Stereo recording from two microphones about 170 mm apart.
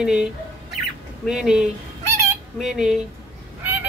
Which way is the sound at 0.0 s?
5° right (ahead or behind).